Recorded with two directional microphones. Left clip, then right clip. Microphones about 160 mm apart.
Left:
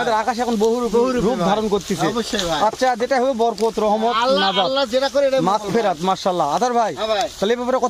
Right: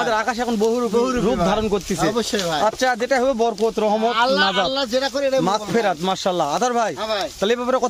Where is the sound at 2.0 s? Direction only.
85° right.